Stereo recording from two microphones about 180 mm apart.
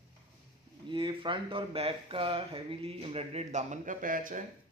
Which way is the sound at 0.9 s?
30° right (ahead or behind).